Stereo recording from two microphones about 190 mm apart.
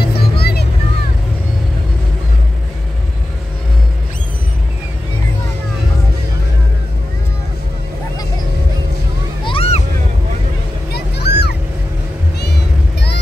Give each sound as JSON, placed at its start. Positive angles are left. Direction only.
{"t": 0.0, "sound": "music", "side_deg": 55}
{"t": 9.4, "sound": "a sound", "side_deg": 30}
{"t": 10.9, "sound": "music", "side_deg": 60}